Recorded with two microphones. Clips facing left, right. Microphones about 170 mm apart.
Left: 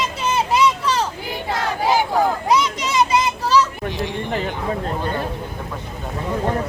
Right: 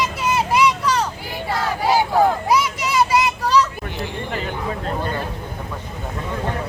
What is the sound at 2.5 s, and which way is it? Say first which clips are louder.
Children playing: even; 20° left (ahead or behind).